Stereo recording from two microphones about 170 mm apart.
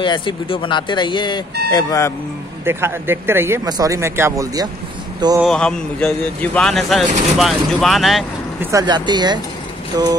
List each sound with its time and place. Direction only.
0.0 s speech: 25° left (ahead or behind)
2.6 s speech: 15° right (ahead or behind)
5.4 s a man's voice: 5° left (ahead or behind)
8.5 s speech: 20° right (ahead or behind)